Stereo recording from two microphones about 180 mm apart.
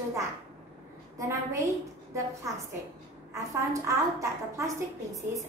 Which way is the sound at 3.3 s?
15° right (ahead or behind).